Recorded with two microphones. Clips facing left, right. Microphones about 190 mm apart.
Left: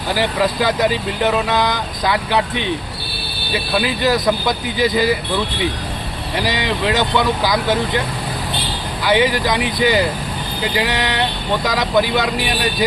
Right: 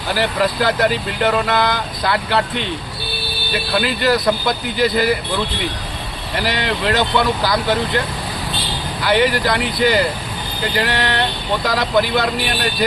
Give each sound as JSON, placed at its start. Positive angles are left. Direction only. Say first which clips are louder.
{"t": 0.1, "sound": "speech", "louder": "even", "side_deg": 15}
{"t": 3.8, "sound": "speech", "louder": "even", "side_deg": 15}
{"t": 6.4, "sound": "speech", "louder": "even", "side_deg": 15}
{"t": 9.0, "sound": "speech", "louder": "even", "side_deg": 15}